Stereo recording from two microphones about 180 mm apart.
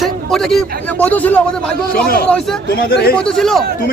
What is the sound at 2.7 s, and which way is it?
Speech, 60° left (ahead or behind).